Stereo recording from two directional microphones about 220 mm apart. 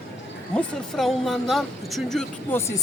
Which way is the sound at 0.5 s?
Centre (ahead or behind).